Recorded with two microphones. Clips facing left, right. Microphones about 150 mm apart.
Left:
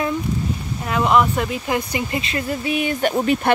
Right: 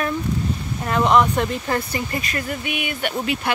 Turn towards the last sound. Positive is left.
turn(degrees=40)  # may be behind; listen again after turning